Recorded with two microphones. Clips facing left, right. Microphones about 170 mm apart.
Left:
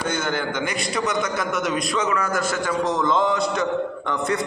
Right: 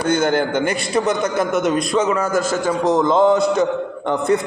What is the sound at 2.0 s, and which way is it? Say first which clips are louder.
Speech: right 5 dB; 25° right (ahead or behind).